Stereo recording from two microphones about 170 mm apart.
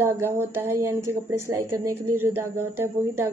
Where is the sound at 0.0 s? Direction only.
15° right (ahead or behind).